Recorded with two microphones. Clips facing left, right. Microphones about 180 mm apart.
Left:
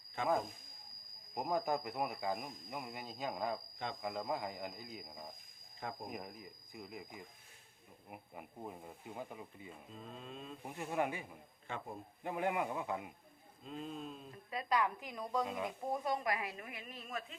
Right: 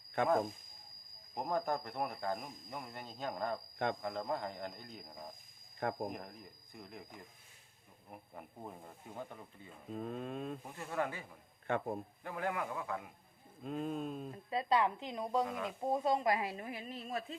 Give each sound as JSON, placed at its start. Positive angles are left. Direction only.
{"t": 0.2, "sound": "speech", "side_deg": -60}
{"t": 1.4, "sound": "speech", "side_deg": 10}
{"t": 9.9, "sound": "speech", "side_deg": -55}
{"t": 10.8, "sound": "speech", "side_deg": 15}
{"t": 11.7, "sound": "speech", "side_deg": -60}
{"t": 12.2, "sound": "a man's voice", "side_deg": 20}
{"t": 13.6, "sound": "a sound", "side_deg": -55}
{"t": 14.5, "sound": "speech", "side_deg": -25}
{"t": 15.4, "sound": "a man's voice", "side_deg": 20}
{"t": 15.8, "sound": "speech", "side_deg": -25}